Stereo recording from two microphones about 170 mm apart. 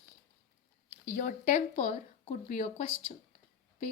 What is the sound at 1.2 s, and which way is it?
A woman's voice, 50° left (ahead or behind).